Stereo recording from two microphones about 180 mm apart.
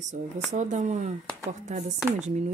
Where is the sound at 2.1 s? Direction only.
40° right (ahead or behind).